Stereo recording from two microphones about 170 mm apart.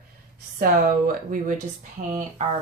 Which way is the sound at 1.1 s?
55° right (ahead or behind).